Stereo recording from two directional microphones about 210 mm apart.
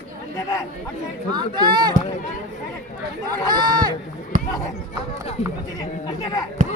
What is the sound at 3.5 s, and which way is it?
Speech, 20° right (ahead or behind).